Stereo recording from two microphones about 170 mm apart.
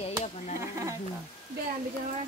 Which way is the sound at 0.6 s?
15° right (ahead or behind).